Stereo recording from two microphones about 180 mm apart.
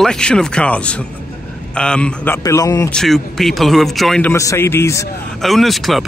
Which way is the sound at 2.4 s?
20° left (ahead or behind).